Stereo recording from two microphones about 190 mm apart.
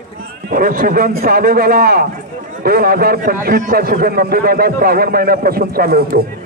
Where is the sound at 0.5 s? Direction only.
50° right (ahead or behind).